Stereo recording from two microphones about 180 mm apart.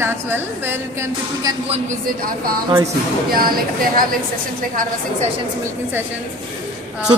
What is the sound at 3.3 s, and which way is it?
Speech, 55° right (ahead or behind).